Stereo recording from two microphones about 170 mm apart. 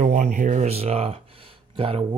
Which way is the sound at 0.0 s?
45° right (ahead or behind).